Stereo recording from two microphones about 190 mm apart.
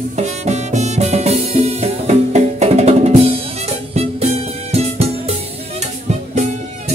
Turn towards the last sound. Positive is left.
turn(degrees=-35)  # may be behind; listen again after turning